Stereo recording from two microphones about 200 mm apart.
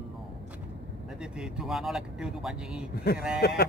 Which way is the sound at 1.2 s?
5° right (ahead or behind).